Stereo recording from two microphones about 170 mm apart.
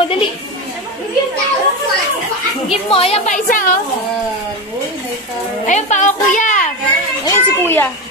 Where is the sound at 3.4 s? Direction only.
55° left (ahead or behind).